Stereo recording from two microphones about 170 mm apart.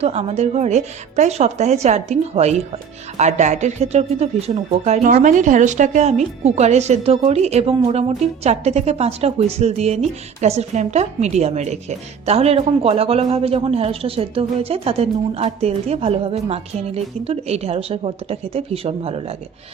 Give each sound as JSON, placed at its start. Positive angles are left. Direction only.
{"t": 0.0, "sound": "speech", "side_deg": -40}